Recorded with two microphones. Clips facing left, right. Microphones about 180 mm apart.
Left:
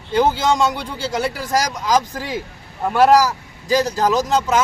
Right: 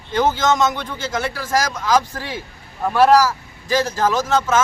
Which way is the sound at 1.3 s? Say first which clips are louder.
Even; 15° left (ahead or behind).